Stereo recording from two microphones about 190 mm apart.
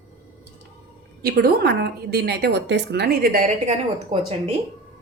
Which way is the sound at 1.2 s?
55° right (ahead or behind).